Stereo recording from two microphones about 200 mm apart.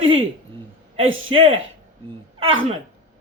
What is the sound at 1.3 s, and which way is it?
Speech, 30° right (ahead or behind).